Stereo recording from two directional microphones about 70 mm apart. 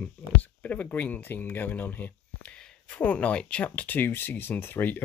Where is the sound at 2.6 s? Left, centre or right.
Centre.